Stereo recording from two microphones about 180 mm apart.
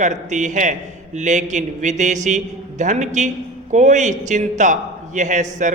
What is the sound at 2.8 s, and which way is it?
Mantra, 40° right (ahead or behind).